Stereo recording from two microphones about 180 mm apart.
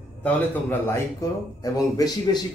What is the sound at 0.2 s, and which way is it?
A man's voice, 10° left (ahead or behind).